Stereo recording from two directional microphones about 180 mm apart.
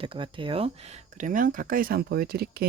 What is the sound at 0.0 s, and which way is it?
Speech, 30° right (ahead or behind).